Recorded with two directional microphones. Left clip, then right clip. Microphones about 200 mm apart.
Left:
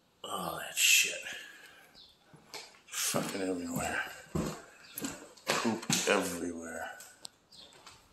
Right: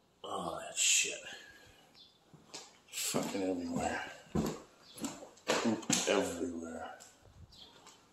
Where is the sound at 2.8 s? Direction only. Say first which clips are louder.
Left 3 dB; 10° right (ahead or behind).